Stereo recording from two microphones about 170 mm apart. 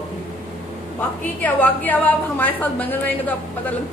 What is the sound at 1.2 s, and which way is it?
A woman's voice, 10° left (ahead or behind).